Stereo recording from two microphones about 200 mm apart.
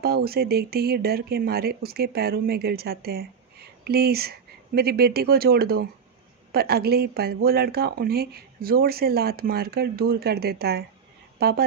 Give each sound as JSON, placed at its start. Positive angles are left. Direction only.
{"t": 0.0, "sound": "speech", "side_deg": -50}